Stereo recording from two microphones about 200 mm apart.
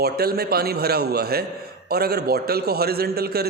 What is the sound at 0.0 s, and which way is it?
A man's voice, 50° right (ahead or behind).